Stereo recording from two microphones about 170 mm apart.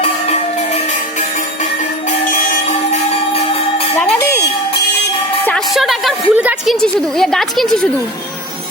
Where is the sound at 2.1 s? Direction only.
50° left (ahead or behind); by 3.9 s 35° left (ahead or behind).